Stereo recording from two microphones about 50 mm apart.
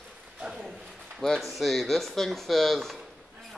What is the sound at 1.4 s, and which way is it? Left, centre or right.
Speech, centre.